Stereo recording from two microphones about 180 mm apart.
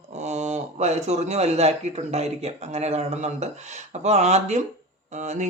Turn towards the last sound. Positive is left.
turn(degrees=-40)  # may be behind; listen again after turning